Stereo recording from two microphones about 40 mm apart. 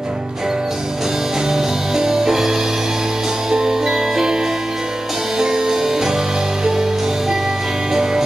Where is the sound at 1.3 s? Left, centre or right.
Centre.